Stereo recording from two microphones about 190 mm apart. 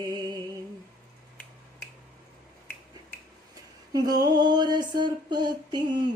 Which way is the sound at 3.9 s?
20° right (ahead or behind).